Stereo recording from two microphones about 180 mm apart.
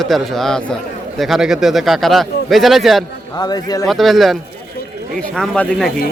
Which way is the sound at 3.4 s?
20° left (ahead or behind).